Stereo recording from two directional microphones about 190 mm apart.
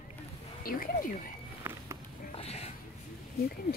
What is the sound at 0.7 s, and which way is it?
Speech, 45° left (ahead or behind).